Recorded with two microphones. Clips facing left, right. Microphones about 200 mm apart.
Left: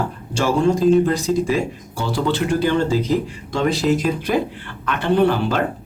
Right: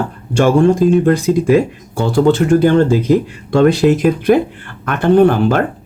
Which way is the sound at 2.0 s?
50° right (ahead or behind).